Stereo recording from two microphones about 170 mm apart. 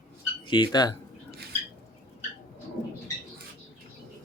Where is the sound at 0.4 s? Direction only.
25° left (ahead or behind).